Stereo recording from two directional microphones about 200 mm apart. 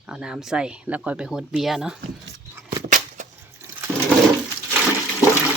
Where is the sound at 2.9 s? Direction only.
40° right (ahead or behind).